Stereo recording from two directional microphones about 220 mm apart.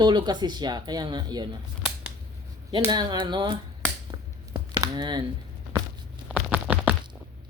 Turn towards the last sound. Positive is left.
turn(degrees=-5)  # may be behind; listen again after turning